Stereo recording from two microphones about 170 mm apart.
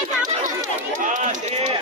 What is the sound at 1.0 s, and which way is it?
Run, 50° right (ahead or behind).